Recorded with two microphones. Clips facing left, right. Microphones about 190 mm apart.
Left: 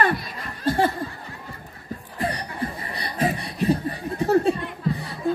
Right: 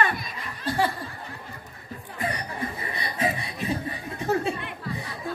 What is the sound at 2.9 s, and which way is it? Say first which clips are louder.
Chuckle: left 3 dB; 35° left (ahead or behind).